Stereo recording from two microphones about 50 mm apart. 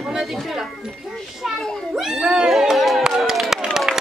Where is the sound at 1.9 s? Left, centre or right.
Centre.